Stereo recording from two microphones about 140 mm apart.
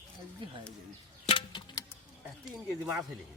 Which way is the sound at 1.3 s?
40° left (ahead or behind).